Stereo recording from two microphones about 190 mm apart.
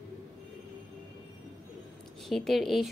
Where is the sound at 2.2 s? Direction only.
Centre (ahead or behind).